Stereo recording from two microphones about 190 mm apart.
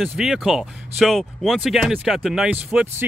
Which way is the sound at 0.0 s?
5° right (ahead or behind).